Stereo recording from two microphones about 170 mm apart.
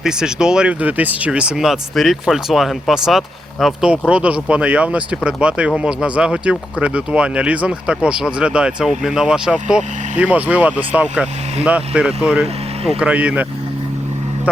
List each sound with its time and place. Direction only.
0.0 s speech: 5° right (ahead or behind)